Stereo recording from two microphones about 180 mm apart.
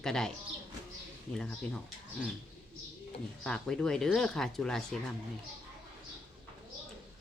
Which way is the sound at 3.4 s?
5° left (ahead or behind).